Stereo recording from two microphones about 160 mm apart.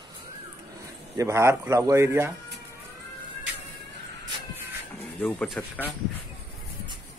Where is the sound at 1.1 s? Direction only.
20° right (ahead or behind).